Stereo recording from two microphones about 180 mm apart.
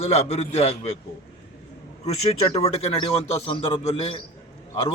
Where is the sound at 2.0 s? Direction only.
35° left (ahead or behind).